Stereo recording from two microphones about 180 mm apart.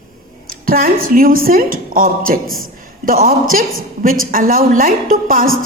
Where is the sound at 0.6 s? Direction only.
55° right (ahead or behind).